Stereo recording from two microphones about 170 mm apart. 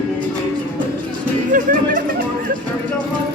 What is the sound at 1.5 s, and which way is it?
Music, 50° right (ahead or behind).